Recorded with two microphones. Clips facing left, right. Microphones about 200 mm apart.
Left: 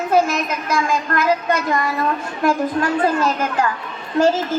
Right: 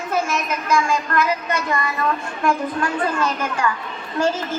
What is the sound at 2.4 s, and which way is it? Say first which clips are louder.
A child's voice: left 3 dB; 40° left (ahead or behind).